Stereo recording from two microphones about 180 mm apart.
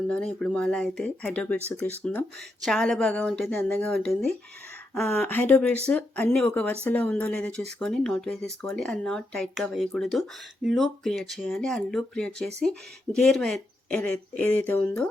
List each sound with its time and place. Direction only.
0.1 s speech: 5° left (ahead or behind)